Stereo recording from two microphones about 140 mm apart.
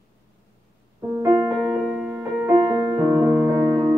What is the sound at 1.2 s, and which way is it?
Music, 20° right (ahead or behind).